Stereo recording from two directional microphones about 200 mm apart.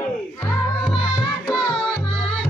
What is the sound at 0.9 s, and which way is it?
Music, 25° left (ahead or behind).